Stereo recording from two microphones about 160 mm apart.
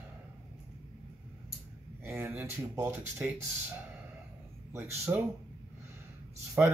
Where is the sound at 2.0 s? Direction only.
15° right (ahead or behind).